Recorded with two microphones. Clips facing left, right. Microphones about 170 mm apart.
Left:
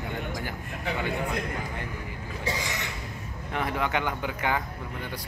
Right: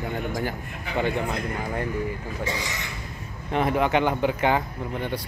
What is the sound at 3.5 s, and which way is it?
Speech, 25° right (ahead or behind).